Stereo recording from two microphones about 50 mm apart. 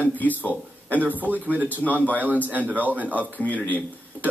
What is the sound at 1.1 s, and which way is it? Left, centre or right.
Speech, right.